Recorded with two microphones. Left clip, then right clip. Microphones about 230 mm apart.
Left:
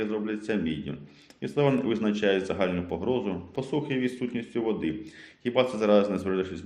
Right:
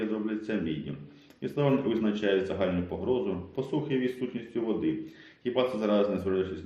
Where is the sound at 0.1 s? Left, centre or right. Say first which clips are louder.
Left 2 dB; left.